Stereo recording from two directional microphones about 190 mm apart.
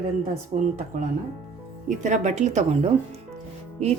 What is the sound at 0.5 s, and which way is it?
Speech, 40° right (ahead or behind).